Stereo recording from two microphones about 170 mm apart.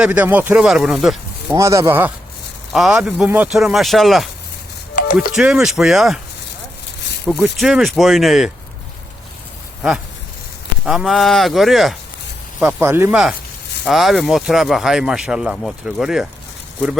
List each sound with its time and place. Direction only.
0.0 s speech: 10° right (ahead or behind)
1.5 s speech: 15° right (ahead or behind); by 6.1 s centre (ahead or behind)
7.3 s speech: centre (ahead or behind)
10.8 s speech: centre (ahead or behind)
12.5 s speech: 10° right (ahead or behind)